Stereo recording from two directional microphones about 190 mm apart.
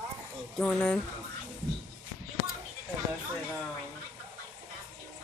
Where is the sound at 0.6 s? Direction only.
5° left (ahead or behind).